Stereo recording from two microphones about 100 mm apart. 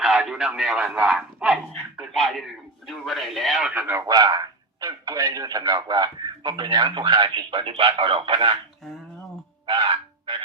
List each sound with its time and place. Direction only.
0.0 s speech: 5° right (ahead or behind)
3.8 s speech: 20° right (ahead or behind)
4.0 s a man's voice: 40° right (ahead or behind); by 8.5 s 60° right (ahead or behind)
9.6 s frog: 55° right (ahead or behind)